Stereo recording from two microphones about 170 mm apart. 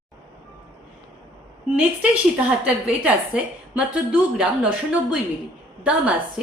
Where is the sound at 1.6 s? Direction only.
10° right (ahead or behind).